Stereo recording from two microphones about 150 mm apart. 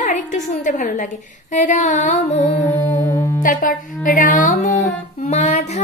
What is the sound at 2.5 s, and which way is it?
Music, 15° left (ahead or behind).